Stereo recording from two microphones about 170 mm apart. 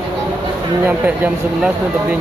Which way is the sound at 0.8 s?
10° right (ahead or behind).